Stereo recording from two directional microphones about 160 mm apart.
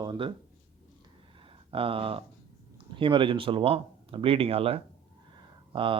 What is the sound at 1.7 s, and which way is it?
A man's voice, 35° right (ahead or behind).